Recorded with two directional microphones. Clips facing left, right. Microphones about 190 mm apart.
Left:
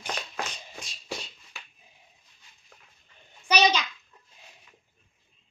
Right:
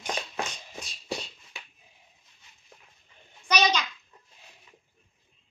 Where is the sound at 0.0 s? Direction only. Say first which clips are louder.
Right 2 dB; 15° right (ahead or behind).